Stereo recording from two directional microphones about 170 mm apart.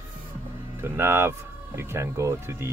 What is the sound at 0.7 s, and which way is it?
Speech, 15° right (ahead or behind).